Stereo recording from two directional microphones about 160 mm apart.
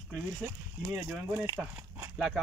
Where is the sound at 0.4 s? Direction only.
10° right (ahead or behind).